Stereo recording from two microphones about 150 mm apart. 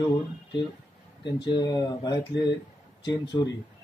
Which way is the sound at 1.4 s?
30° left (ahead or behind).